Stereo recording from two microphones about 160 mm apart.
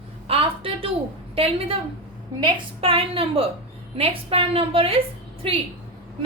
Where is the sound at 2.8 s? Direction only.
35° right (ahead or behind).